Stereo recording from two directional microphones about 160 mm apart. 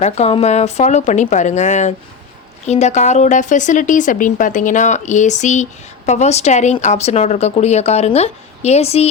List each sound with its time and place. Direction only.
0.0 s speech: 40° left (ahead or behind)